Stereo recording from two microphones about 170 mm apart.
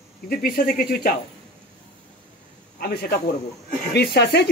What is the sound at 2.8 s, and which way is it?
Speech, 70° left (ahead or behind).